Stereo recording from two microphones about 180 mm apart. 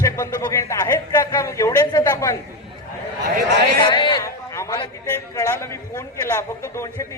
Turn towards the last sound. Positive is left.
turn(degrees=15)  # may be behind; listen again after turning